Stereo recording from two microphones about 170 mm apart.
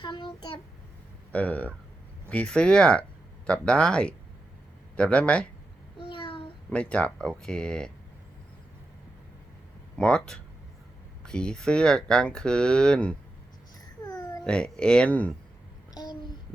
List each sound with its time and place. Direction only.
0.0 s child singing: 25° left (ahead or behind)
1.3 s speech: 10° left (ahead or behind)
6.0 s a sound: 30° left (ahead or behind)
6.7 s speech: 5° left (ahead or behind)
10.0 s speech: 5° left (ahead or behind)
14.0 s babbling: 25° left (ahead or behind)
14.4 s speech: 5° left (ahead or behind)